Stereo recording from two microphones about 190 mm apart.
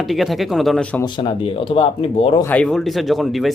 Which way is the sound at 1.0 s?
25° left (ahead or behind).